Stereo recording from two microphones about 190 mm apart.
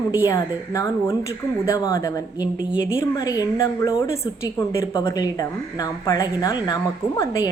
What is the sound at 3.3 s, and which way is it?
Speech, 20° left (ahead or behind).